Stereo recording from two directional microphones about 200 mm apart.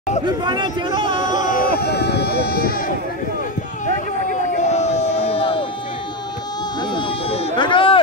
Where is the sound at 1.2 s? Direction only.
40° left (ahead or behind).